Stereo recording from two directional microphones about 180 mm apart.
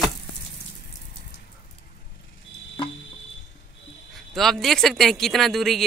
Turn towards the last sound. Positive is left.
turn(degrees=0)  # may be behind; listen again after turning